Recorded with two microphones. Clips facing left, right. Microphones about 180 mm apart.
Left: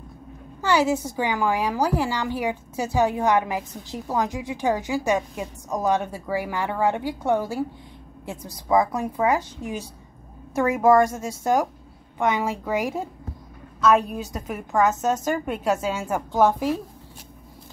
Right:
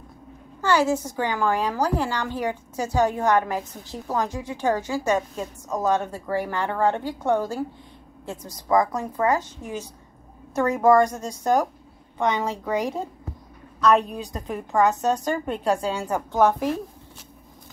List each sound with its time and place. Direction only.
0.6 s a woman's voice: 10° left (ahead or behind)